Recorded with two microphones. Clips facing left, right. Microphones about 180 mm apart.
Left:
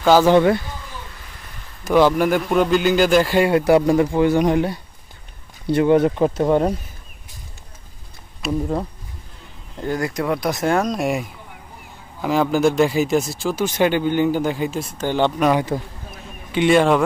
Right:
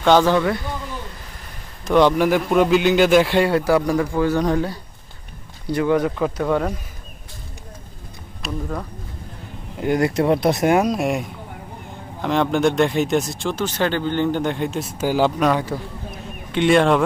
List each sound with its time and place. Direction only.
0.0 s speech: 5° left (ahead or behind)
1.9 s speech: 5° left (ahead or behind)
3.4 s a man's voice: 20° left (ahead or behind)
8.4 s speech: centre (ahead or behind)
9.9 s speech: 25° right (ahead or behind)
10.7 s speech: 5° right (ahead or behind)
16.1 s a sound: centre (ahead or behind)